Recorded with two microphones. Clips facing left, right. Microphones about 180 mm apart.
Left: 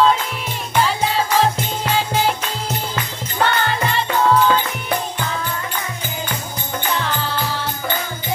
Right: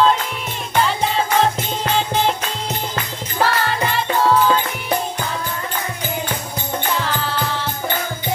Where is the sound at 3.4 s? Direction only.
Centre (ahead or behind).